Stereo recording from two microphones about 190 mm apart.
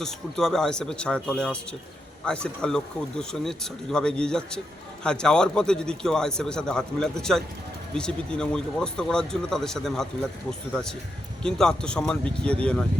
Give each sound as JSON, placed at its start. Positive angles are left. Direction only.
{"t": 0.0, "sound": "speech", "side_deg": 0}